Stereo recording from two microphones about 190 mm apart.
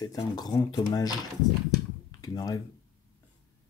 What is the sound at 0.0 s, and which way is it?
Speech, 20° left (ahead or behind).